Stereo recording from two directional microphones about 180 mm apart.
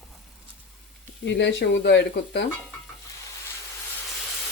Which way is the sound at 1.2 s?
75° left (ahead or behind).